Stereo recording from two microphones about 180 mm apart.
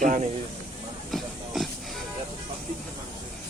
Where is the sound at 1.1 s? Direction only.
Centre (ahead or behind).